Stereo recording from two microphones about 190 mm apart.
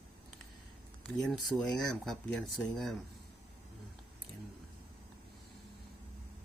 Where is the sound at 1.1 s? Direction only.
Centre (ahead or behind).